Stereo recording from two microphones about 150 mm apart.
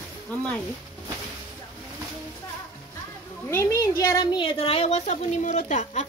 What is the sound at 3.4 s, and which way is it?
Speech, 20° left (ahead or behind).